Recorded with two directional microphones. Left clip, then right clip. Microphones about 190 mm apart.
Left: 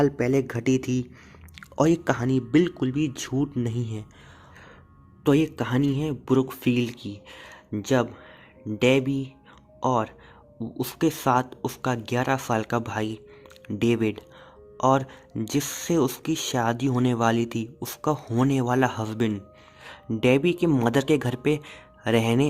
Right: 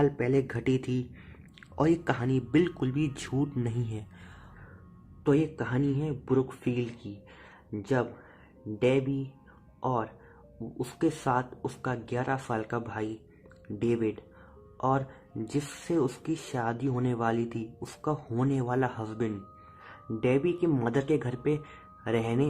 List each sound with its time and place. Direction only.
0.0 s speech: 30° left (ahead or behind)
5.2 s speech: 50° left (ahead or behind)